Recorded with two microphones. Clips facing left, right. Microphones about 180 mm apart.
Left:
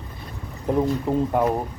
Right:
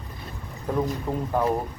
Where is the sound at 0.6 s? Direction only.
20° left (ahead or behind).